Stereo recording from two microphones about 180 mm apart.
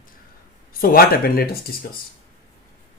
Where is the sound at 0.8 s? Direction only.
55° left (ahead or behind).